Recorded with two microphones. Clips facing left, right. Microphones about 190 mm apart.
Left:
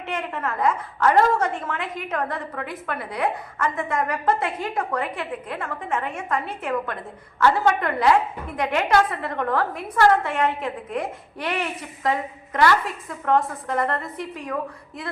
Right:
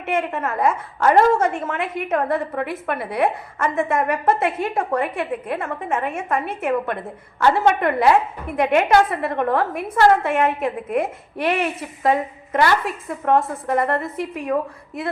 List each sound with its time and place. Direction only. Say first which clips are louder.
0.0 s a woman's voice: right 5 dB; 25° right (ahead or behind)